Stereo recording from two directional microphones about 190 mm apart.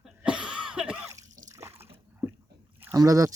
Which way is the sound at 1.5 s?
15° right (ahead or behind).